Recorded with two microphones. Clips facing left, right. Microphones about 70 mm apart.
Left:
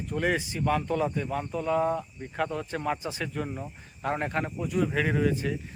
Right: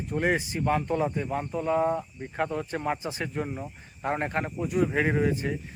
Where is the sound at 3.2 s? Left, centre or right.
Right.